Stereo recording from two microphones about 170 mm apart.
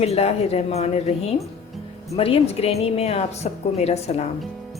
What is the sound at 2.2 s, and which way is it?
A woman's voice, 35° left (ahead or behind).